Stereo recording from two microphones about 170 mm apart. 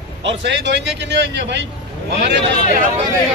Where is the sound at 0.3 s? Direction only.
90° right.